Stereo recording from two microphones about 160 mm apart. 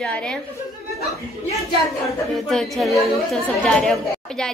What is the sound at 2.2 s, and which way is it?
A woman's voice, centre (ahead or behind).